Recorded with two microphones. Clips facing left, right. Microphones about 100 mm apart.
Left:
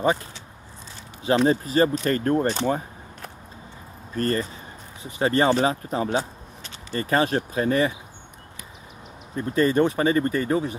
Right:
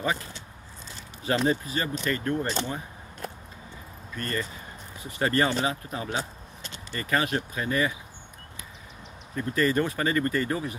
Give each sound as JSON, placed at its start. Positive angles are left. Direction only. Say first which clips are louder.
{"t": 1.2, "sound": "speech", "louder": "left 5 dB", "side_deg": 20}
{"t": 1.5, "sound": "speech", "louder": "left 8 dB", "side_deg": 35}
{"t": 4.1, "sound": "speech", "louder": "left 7 dB", "side_deg": 40}
{"t": 5.0, "sound": "speech", "louder": "left 4 dB", "side_deg": 25}
{"t": 5.5, "sound": "speech", "louder": "left 7 dB", "side_deg": 35}
{"t": 9.3, "sound": "speech", "louder": "left 4 dB", "side_deg": 25}